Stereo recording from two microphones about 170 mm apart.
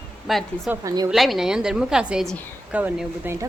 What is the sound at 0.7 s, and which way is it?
Speech, 20° right (ahead or behind).